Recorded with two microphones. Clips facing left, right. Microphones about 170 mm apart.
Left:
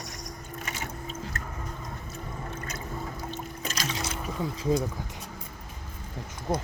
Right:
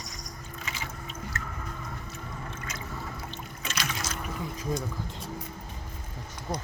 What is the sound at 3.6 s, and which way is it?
Boat, 35° left (ahead or behind).